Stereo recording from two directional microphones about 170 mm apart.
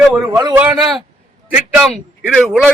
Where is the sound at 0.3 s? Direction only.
20° right (ahead or behind).